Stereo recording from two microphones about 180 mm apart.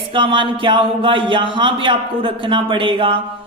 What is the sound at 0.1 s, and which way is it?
A man's voice, 30° right (ahead or behind).